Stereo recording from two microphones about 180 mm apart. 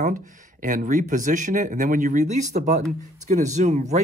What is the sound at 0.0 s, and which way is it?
Speech, 45° right (ahead or behind).